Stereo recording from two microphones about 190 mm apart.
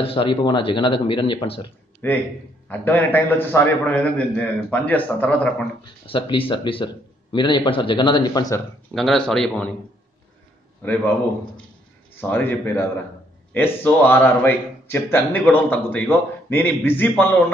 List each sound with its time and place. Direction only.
0.0 s a man's voice: 30° left (ahead or behind)
2.0 s a man's voice: 10° left (ahead or behind)
6.0 s a man's voice: 25° left (ahead or behind)
8.9 s speech: centre (ahead or behind)
12.2 s a man's voice: 10° left (ahead or behind)